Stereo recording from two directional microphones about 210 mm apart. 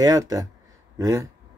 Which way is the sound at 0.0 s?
15° right (ahead or behind).